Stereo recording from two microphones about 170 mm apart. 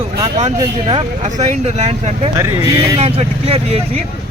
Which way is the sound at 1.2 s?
45° right (ahead or behind).